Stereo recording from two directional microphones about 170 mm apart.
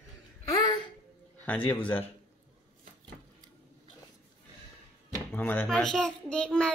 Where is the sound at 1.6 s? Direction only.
30° left (ahead or behind).